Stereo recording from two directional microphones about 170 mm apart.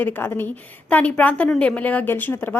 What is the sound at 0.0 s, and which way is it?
A woman's voice, 10° left (ahead or behind).